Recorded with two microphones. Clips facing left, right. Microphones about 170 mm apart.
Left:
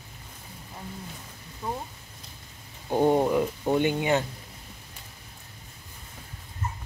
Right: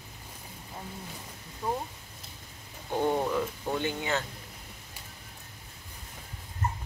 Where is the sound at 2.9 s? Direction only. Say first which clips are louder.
Left 6 dB; 20° left (ahead or behind).